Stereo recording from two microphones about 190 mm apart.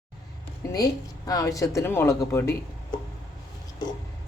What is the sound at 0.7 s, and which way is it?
Speech, 20° left (ahead or behind).